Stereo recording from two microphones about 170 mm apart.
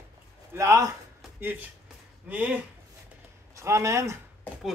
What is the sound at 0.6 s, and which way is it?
Speech, 15° right (ahead or behind).